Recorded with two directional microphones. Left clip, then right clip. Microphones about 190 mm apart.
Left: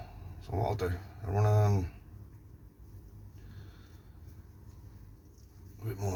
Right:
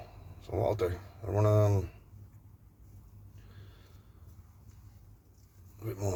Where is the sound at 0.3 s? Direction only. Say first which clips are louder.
Right 3 dB; 45° right (ahead or behind).